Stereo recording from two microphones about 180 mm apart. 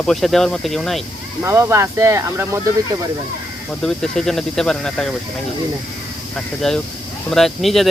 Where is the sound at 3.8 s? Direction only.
5° left (ahead or behind).